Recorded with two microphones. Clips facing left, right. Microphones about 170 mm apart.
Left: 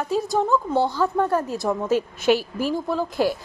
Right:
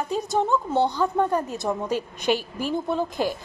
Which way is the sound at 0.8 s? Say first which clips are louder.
Right 1 dB; 20° right (ahead or behind).